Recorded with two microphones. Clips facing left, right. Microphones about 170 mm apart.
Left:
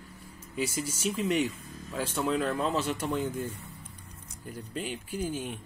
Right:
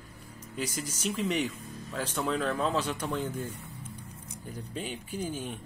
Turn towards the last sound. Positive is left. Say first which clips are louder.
# left 2 dB
turn(degrees=10)  # may be behind; listen again after turning